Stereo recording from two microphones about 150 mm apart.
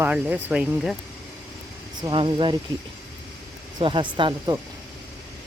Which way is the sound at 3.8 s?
35° right (ahead or behind).